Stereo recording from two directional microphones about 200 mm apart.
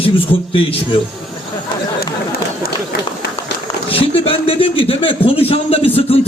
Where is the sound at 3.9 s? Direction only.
30° left (ahead or behind).